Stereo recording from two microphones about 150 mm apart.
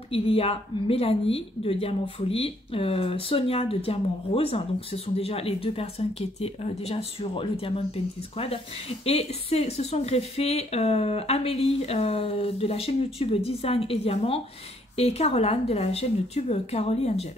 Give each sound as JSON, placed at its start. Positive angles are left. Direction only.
{"t": 0.1, "sound": "a woman's voice", "side_deg": 40}